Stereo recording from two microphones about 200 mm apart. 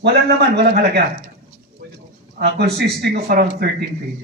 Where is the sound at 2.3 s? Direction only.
55° right (ahead or behind).